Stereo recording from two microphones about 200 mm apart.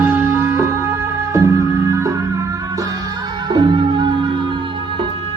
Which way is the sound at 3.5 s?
20° right (ahead or behind).